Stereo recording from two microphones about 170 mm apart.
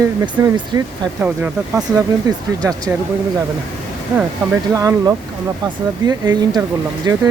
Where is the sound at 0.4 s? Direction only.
25° right (ahead or behind).